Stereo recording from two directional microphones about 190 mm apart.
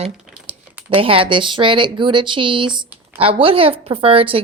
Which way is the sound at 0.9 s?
30° right (ahead or behind).